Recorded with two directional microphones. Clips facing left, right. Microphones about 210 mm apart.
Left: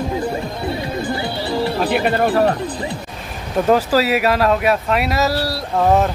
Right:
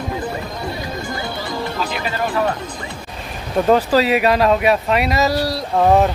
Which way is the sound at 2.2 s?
35° left (ahead or behind).